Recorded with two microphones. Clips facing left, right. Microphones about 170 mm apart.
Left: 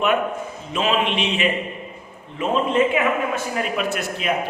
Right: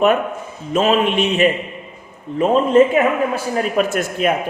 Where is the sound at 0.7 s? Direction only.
45° right (ahead or behind).